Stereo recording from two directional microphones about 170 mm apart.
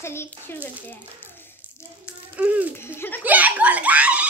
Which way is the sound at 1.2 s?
15° left (ahead or behind).